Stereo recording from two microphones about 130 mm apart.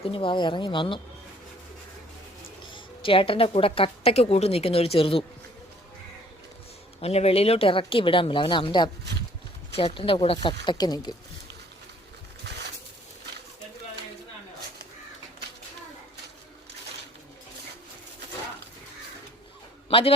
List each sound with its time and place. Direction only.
0.0 s speech: 40° left (ahead or behind)
2.6 s a woman's voice: 40° left (ahead or behind)
7.0 s speech: 55° left (ahead or behind); by 11.1 s 30° left (ahead or behind)
19.9 s a man's voice: 45° left (ahead or behind)